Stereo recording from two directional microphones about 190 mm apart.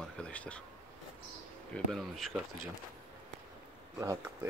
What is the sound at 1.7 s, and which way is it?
Speech, centre (ahead or behind).